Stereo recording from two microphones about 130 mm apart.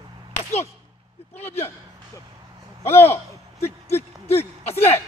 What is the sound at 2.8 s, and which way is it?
Speech, 20° left (ahead or behind).